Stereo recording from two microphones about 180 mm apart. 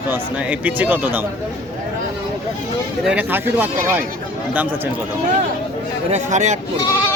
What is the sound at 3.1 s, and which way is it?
Speech, 10° right (ahead or behind).